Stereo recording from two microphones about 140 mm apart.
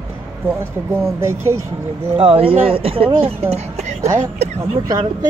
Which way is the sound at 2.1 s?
40° right (ahead or behind).